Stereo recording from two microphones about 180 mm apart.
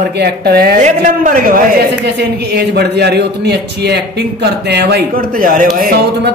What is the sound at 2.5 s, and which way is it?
Speech, 65° right (ahead or behind).